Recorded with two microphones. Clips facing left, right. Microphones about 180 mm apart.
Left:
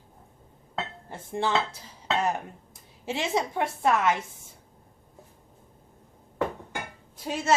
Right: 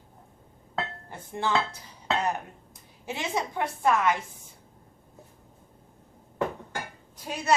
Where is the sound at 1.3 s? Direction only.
25° left (ahead or behind).